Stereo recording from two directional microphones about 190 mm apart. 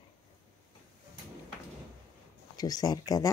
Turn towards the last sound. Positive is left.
turn(degrees=20)  # may be behind; listen again after turning